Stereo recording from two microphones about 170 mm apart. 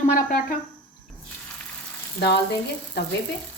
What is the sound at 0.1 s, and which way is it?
Speech, 50° left (ahead or behind).